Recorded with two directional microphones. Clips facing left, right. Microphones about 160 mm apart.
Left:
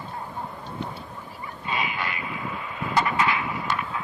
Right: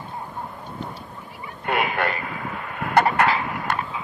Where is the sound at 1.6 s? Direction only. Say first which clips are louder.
Right 7 dB; 60° right (ahead or behind).